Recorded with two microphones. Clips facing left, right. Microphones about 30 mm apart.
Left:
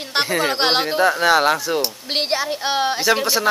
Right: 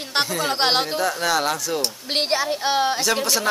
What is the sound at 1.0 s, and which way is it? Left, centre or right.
Speech, left.